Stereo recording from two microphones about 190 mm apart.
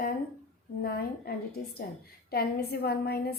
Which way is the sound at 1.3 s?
55° left (ahead or behind).